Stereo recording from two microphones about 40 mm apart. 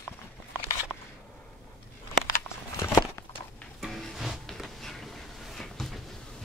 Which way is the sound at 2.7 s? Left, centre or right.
Left.